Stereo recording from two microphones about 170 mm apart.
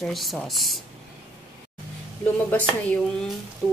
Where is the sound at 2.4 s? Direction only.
10° left (ahead or behind).